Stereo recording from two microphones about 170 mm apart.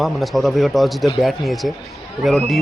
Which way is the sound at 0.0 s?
Centre (ahead or behind).